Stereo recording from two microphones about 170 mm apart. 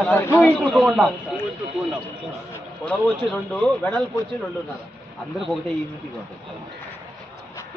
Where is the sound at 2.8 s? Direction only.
5° left (ahead or behind).